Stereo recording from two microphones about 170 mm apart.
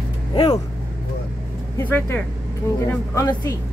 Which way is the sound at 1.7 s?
10° left (ahead or behind).